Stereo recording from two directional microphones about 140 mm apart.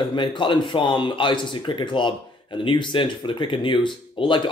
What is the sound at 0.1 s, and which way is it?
Speech, 35° left (ahead or behind).